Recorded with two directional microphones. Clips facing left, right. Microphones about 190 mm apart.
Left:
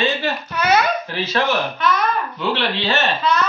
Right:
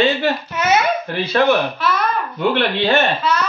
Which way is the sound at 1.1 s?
55° right (ahead or behind).